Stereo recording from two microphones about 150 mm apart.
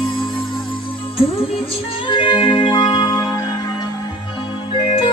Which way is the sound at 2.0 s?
35° left (ahead or behind).